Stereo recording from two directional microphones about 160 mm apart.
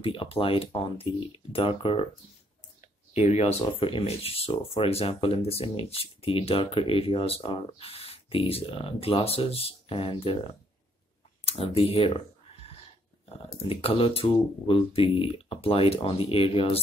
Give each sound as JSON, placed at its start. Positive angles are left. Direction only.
{"t": 0.0, "sound": "speech", "side_deg": 35}
{"t": 3.1, "sound": "speech", "side_deg": 40}
{"t": 11.4, "sound": "speech", "side_deg": 35}
{"t": 13.3, "sound": "speech", "side_deg": 35}